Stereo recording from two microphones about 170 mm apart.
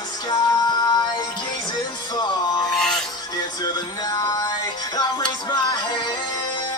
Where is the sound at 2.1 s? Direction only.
25° left (ahead or behind).